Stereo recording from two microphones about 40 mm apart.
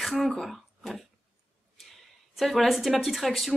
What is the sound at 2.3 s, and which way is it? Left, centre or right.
Speech, centre.